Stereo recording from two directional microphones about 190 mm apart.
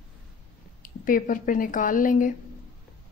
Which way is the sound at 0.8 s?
45° left (ahead or behind).